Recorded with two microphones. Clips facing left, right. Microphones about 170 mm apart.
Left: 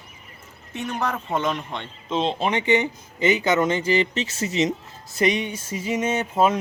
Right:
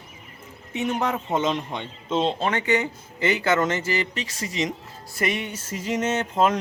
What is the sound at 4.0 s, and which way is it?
Speech, 25° left (ahead or behind).